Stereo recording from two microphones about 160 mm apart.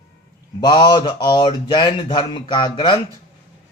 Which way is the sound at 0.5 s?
25° left (ahead or behind).